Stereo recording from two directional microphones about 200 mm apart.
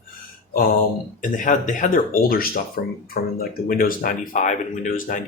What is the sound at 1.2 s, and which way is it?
Speech, 40° left (ahead or behind).